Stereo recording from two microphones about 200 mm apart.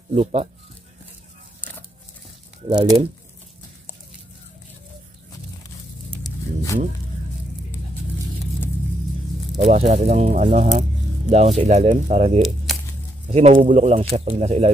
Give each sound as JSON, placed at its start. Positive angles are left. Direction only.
{"t": 0.1, "sound": "speech", "side_deg": -30}
{"t": 2.7, "sound": "speech", "side_deg": -20}
{"t": 9.7, "sound": "speech", "side_deg": -35}
{"t": 12.4, "sound": "a sound", "side_deg": 0}
{"t": 13.3, "sound": "speech", "side_deg": -30}